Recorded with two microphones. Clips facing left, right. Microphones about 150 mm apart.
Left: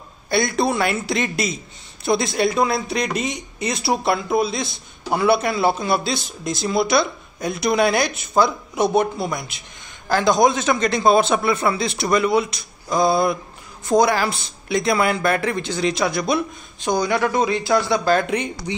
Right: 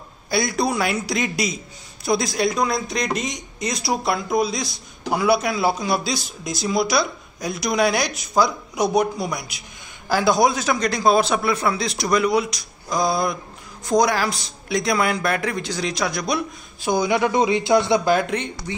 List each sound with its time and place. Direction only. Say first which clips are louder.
0.3 s speech: left 2 dB; centre (ahead or behind); by 18.1 s 20° right (ahead or behind)
18.7 s speech: left 3 dB; 15° left (ahead or behind)